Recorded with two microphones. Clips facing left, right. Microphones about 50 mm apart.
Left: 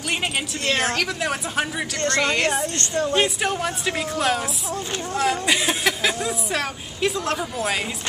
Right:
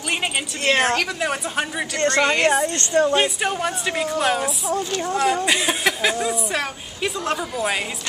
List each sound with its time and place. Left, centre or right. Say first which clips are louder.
0.7 s speech: right 5 dB; right
0.9 s speech: right 2 dB; centre
2.1 s speech: right 3 dB; centre
2.6 s speech: right 5 dB; right
3.2 s speech: right 1 dB; centre